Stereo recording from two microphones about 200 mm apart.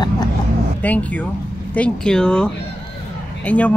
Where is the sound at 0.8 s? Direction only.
5° left (ahead or behind).